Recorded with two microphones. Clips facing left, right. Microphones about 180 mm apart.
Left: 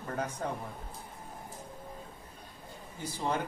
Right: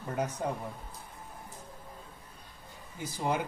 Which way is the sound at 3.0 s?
10° right (ahead or behind).